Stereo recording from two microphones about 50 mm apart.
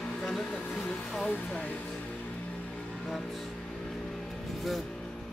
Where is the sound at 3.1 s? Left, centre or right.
Centre.